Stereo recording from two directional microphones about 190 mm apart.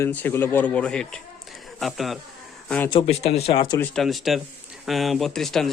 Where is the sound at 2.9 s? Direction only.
35° left (ahead or behind).